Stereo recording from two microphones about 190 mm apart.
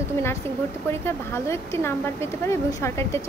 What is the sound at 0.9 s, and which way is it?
A woman's voice, 15° left (ahead or behind).